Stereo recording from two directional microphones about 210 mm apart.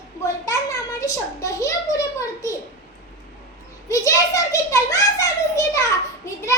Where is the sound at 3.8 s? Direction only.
15° left (ahead or behind).